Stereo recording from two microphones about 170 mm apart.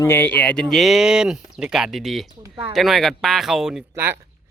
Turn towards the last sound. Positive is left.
turn(degrees=-15)  # may be behind; listen again after turning